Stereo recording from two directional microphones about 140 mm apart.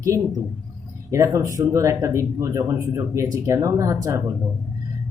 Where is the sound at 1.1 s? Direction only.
20° right (ahead or behind).